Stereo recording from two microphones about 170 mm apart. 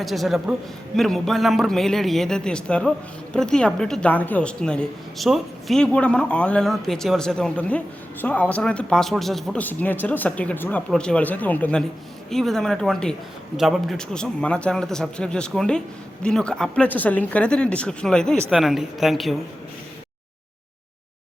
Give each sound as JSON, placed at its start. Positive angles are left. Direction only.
{"t": 0.0, "sound": "a woman's voice", "side_deg": 0}